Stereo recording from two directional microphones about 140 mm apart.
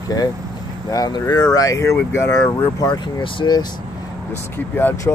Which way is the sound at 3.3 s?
30° left (ahead or behind).